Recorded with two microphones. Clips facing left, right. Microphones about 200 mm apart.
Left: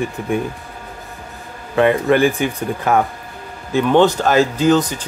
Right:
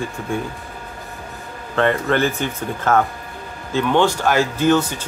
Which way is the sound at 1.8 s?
15° left (ahead or behind).